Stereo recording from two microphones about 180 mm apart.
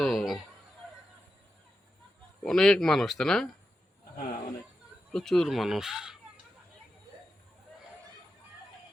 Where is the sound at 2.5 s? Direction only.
5° left (ahead or behind).